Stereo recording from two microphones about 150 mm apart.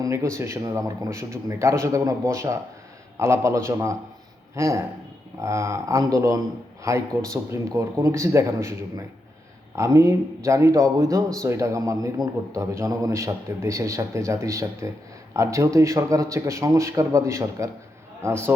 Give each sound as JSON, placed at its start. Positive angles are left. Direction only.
{"t": 0.0, "sound": "a man's voice", "side_deg": -20}